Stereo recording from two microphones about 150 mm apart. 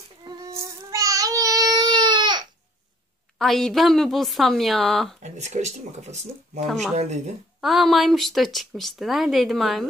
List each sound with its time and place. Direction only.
0.6 s baby cry: 20° right (ahead or behind)
3.3 s a woman's voice: centre (ahead or behind)
5.2 s speech: 50° right (ahead or behind)
7.6 s a woman's voice: centre (ahead or behind)